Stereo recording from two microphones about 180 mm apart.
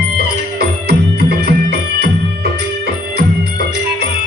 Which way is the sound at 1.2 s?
60° right (ahead or behind).